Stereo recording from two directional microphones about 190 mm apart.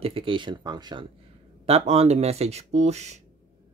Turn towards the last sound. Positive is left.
turn(degrees=-35)  # may be behind; listen again after turning